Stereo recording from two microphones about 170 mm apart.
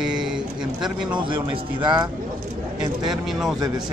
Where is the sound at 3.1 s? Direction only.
Centre (ahead or behind).